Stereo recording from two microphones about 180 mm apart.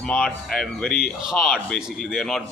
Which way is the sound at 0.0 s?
5° left (ahead or behind).